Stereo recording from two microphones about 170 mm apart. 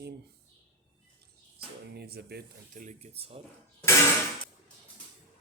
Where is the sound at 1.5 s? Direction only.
70° right (ahead or behind).